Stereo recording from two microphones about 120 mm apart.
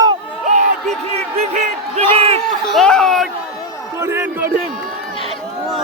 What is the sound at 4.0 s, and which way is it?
Speech, 20° right (ahead or behind).